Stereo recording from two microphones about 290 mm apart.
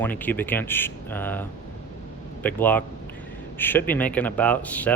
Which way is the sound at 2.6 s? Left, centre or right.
Centre.